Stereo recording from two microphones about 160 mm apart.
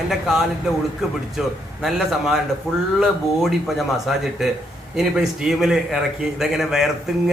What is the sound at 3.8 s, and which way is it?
Speech, centre (ahead or behind).